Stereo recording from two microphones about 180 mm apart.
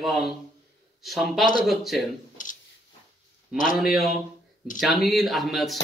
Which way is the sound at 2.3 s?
45° left (ahead or behind).